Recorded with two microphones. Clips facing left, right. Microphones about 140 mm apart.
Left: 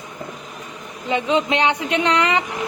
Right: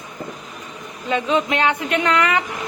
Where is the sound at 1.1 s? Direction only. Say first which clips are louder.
Even; 20° left (ahead or behind).